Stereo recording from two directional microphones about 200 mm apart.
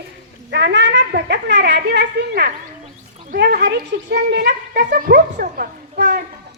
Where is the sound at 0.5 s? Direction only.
60° right (ahead or behind).